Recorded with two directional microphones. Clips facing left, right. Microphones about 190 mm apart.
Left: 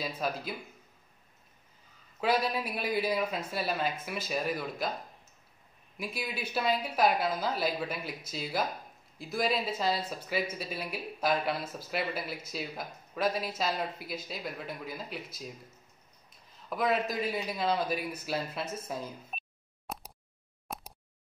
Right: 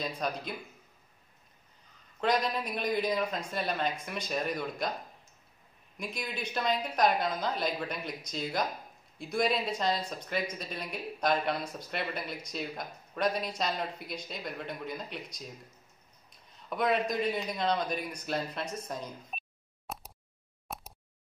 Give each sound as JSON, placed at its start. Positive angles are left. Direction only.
{"t": 0.0, "sound": "speech", "side_deg": 5}
{"t": 2.1, "sound": "speech", "side_deg": 5}
{"t": 5.9, "sound": "speech", "side_deg": 5}
{"t": 19.9, "sound": "a sound", "side_deg": 0}